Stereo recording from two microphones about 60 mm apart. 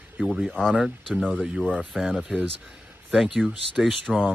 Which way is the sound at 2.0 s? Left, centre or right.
Centre.